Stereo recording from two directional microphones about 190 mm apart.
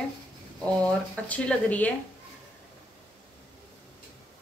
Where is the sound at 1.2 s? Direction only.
5° left (ahead or behind).